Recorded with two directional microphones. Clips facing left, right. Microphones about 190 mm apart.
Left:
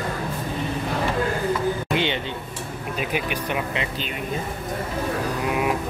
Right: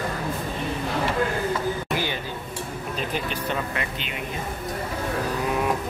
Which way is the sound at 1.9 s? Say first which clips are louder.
Left 4 dB; 25° left (ahead or behind).